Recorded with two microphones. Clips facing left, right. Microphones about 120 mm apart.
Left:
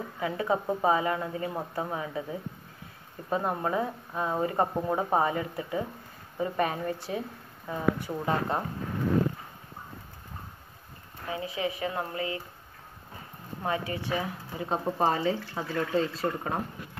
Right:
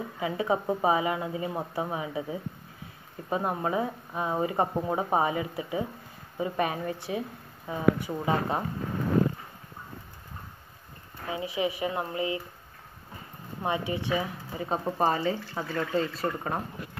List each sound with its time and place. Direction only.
0.0 s speech: 5° right (ahead or behind)
11.2 s speech: 20° right (ahead or behind)
13.6 s speech: 20° right (ahead or behind)
14.1 s speech: centre (ahead or behind)